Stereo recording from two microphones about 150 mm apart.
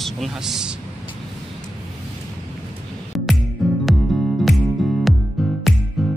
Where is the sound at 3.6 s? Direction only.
Centre (ahead or behind).